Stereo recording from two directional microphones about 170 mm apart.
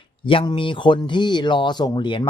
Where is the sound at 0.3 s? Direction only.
30° left (ahead or behind).